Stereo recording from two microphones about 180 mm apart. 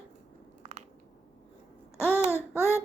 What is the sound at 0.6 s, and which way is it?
Crunch, 40° right (ahead or behind).